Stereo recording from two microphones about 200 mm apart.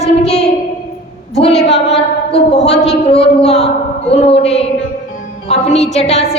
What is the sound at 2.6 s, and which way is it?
A woman's voice, 30° left (ahead or behind).